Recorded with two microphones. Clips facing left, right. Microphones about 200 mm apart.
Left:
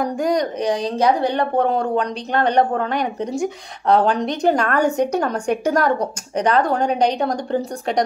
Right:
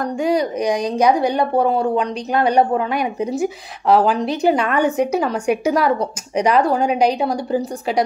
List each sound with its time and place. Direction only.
0.0 s a woman's voice: 5° right (ahead or behind)